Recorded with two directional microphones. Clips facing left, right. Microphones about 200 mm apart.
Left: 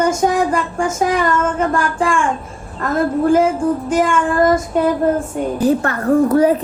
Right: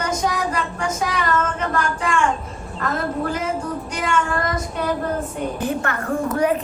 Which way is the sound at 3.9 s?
50° left (ahead or behind).